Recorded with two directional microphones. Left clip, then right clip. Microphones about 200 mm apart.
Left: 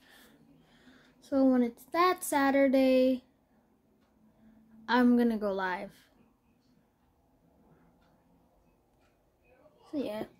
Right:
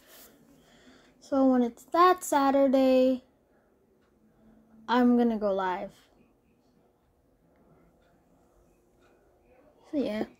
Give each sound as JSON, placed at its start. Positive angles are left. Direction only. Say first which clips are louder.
{"t": 0.7, "sound": "a sound", "louder": "right 2 dB", "side_deg": -10}
{"t": 2.2, "sound": "a woman's voice", "louder": "right 3 dB", "side_deg": -5}
{"t": 4.8, "sound": "a woman's voice", "louder": "right 2 dB", "side_deg": -5}
{"t": 9.8, "sound": "a child's voice", "louder": "right 5 dB", "side_deg": -20}